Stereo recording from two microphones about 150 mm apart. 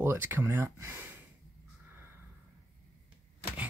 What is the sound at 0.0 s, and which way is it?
Speech, 15° right (ahead or behind).